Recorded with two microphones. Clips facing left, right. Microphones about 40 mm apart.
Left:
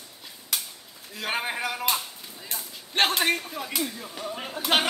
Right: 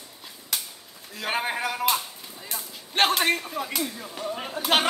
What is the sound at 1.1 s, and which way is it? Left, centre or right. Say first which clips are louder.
Chop: right 2 dB; centre.